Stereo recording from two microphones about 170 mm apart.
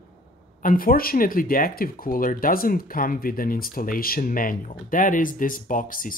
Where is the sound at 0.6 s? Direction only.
55° left (ahead or behind).